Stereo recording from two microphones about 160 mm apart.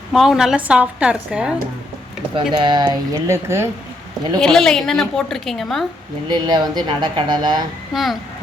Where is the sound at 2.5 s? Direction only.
30° right (ahead or behind).